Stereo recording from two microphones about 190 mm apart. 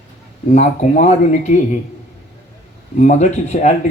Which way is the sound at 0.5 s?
40° left (ahead or behind).